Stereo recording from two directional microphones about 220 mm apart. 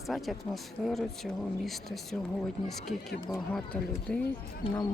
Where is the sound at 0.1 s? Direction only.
Centre (ahead or behind).